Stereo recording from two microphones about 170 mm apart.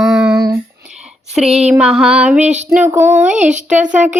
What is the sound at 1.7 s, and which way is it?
Music, 5° right (ahead or behind).